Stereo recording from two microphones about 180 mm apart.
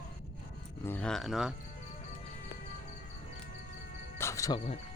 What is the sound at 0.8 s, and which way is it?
Speech, 5° left (ahead or behind).